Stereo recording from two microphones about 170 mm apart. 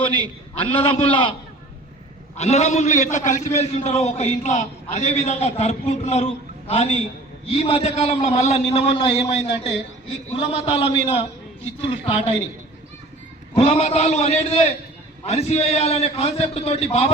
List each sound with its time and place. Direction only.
0.5 s a man's voice: 30° left (ahead or behind)
2.4 s a man's voice: 40° left (ahead or behind)
13.6 s a man's voice: 35° left (ahead or behind)